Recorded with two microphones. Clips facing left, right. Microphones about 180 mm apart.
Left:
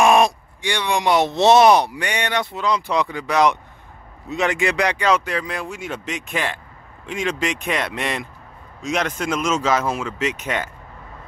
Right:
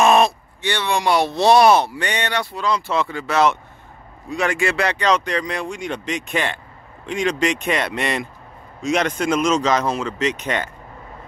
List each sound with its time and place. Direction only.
0.0 s speech: 15° left (ahead or behind)